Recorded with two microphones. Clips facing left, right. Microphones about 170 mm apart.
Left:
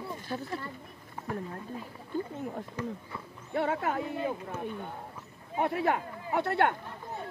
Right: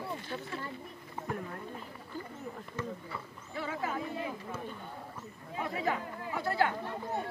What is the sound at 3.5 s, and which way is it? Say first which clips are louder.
Speech: left 6 dB; 65° left (ahead or behind).